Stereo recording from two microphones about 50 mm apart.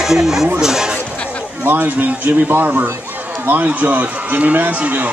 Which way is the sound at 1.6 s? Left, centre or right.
Right.